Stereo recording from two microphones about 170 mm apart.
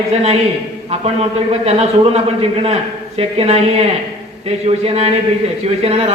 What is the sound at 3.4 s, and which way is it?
A man's voice, 40° right (ahead or behind).